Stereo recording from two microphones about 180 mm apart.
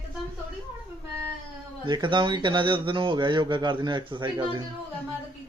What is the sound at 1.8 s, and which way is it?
Speech, 25° right (ahead or behind).